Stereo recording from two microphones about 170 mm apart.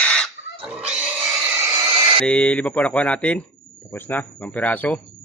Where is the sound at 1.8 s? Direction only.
30° right (ahead or behind).